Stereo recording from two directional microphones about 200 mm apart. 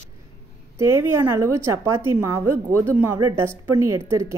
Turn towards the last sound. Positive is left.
turn(degrees=-15)  # may be behind; listen again after turning